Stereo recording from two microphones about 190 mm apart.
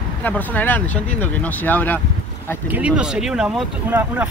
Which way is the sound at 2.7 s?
5° right (ahead or behind).